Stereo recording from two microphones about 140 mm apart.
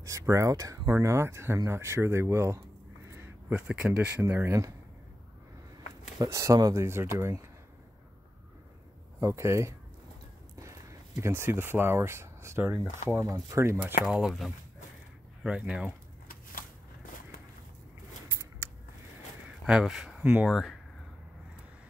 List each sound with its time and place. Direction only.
0.0 s speech: 20° right (ahead or behind)
6.1 s speech: 20° right (ahead or behind)
9.2 s speech: 20° right (ahead or behind)
14.0 s speech: centre (ahead or behind)
16.3 s a sound: 85° left
19.6 s speech: 5° right (ahead or behind)